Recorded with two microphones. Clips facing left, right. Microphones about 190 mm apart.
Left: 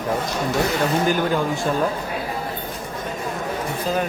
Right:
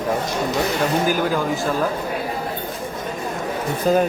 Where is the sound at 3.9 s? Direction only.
55° right (ahead or behind).